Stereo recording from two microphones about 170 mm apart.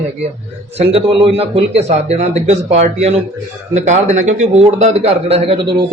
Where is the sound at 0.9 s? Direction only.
30° right (ahead or behind).